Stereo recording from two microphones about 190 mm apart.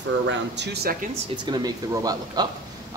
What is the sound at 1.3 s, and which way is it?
Speech, 25° right (ahead or behind).